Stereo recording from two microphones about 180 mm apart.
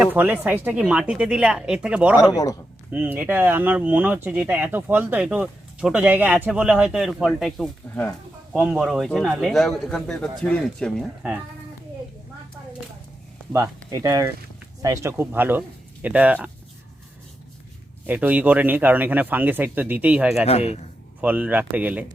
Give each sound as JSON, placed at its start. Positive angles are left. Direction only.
{"t": 0.0, "sound": "speech", "side_deg": -10}
{"t": 2.1, "sound": "a man's voice", "side_deg": 20}
{"t": 2.9, "sound": "speech", "side_deg": -10}
{"t": 13.5, "sound": "speech", "side_deg": -15}
{"t": 18.0, "sound": "speech", "side_deg": -10}
{"t": 20.4, "sound": "a man's voice", "side_deg": 35}
{"t": 21.2, "sound": "speech", "side_deg": -10}